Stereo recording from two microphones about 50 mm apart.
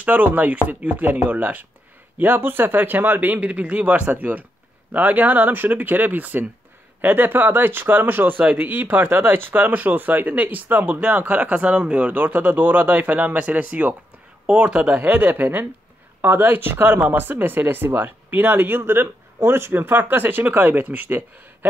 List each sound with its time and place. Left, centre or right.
0.0 s speech: right
2.1 s speech: right
15.0 s speech: right